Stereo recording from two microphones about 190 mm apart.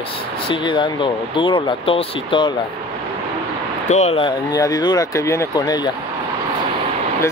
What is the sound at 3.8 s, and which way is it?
Speech, 35° left (ahead or behind).